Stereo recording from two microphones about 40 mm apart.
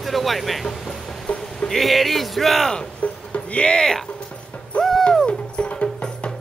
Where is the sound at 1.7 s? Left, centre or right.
Centre.